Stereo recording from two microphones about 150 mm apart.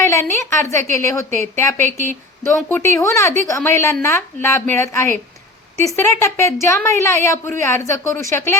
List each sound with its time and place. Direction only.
0.0 s a woman's voice: 20° left (ahead or behind)